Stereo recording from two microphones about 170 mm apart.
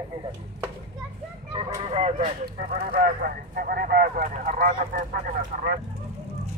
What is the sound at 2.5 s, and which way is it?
Speech, 65° right (ahead or behind).